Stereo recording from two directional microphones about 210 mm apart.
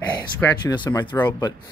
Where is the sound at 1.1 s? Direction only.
10° left (ahead or behind).